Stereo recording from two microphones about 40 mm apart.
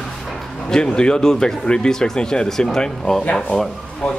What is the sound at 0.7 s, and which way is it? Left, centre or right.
A man's voice, left.